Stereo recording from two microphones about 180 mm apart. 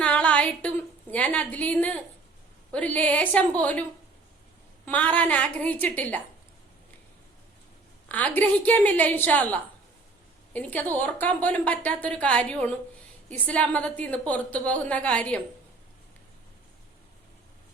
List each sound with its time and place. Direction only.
0.0 s a sound: 5° left (ahead or behind)
1.1 s speech: 10° left (ahead or behind)
4.9 s speech: 10° left (ahead or behind)
8.0 s speech: 10° left (ahead or behind)